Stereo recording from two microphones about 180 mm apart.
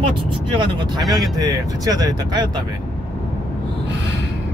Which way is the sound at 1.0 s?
Centre (ahead or behind).